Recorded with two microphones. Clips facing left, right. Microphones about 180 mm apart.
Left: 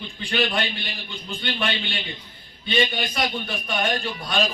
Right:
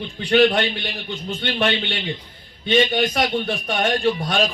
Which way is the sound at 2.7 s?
40° right (ahead or behind).